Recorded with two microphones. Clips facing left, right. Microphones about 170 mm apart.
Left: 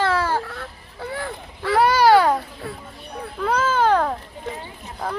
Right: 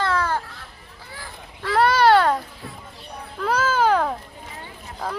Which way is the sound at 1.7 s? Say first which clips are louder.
Left 1 dB; centre (ahead or behind).